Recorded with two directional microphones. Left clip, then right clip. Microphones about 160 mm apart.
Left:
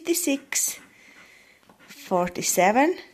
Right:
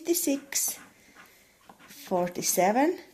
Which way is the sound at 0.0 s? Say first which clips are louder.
Left 3 dB; 20° left (ahead or behind).